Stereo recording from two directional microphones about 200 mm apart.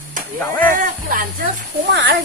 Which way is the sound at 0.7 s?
45° right (ahead or behind).